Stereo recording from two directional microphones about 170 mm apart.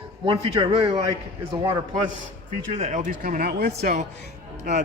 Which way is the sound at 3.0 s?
50° right (ahead or behind).